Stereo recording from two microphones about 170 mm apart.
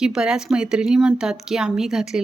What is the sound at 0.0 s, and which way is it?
A woman's voice, 5° right (ahead or behind).